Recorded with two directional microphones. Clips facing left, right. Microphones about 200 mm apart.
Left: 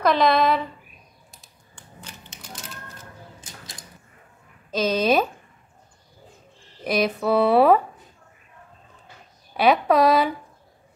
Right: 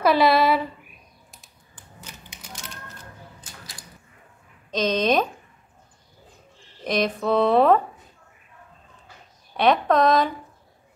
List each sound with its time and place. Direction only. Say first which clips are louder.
0.0 s speech: right 1 dB; 5° right (ahead or behind)
3.3 s a sound: left 1 dB; 25° left (ahead or behind)
4.6 s speech: left 1 dB; 5° left (ahead or behind)
6.8 s speech: left 1 dB; 5° left (ahead or behind)
9.6 s speech: left 1 dB; 5° left (ahead or behind)